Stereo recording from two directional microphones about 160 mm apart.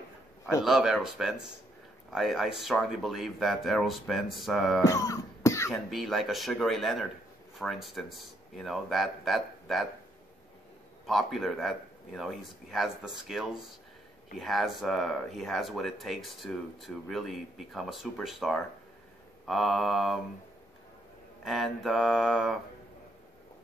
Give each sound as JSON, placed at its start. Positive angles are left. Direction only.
{"t": 0.6, "sound": "speech", "side_deg": 0}
{"t": 4.8, "sound": "music", "side_deg": 20}
{"t": 5.7, "sound": "speech", "side_deg": 0}
{"t": 11.1, "sound": "speech", "side_deg": 0}
{"t": 21.5, "sound": "speech", "side_deg": 0}